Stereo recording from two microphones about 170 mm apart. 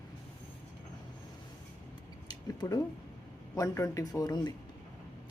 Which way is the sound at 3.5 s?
20° left (ahead or behind).